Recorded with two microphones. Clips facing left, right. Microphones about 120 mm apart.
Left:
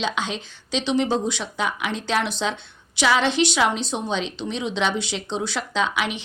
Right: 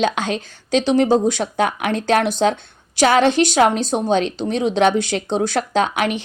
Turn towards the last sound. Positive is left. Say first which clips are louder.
# right 6 dB
turn(degrees=-50)  # may be behind; listen again after turning